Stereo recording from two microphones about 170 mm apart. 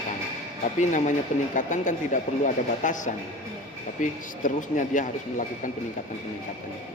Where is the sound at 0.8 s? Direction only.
45° left (ahead or behind).